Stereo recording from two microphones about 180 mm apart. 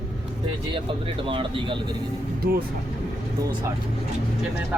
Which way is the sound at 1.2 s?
30° right (ahead or behind).